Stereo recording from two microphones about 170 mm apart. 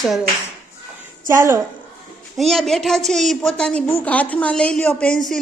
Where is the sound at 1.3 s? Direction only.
15° right (ahead or behind).